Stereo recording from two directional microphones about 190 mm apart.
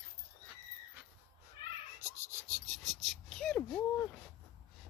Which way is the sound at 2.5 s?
Centre (ahead or behind).